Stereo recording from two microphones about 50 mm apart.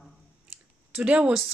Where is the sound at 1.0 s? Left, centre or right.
Right.